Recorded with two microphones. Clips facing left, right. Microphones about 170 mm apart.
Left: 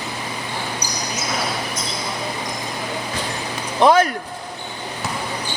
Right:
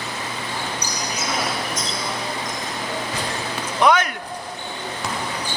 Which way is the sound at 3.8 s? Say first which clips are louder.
Left 4 dB; 30° left (ahead or behind).